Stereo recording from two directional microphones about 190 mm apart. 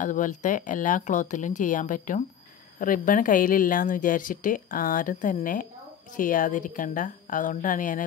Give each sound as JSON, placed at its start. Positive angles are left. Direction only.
{"t": 0.0, "sound": "a woman's voice", "side_deg": 45}